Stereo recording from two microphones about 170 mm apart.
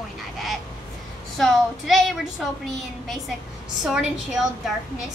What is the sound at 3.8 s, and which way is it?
Speech, 5° right (ahead or behind).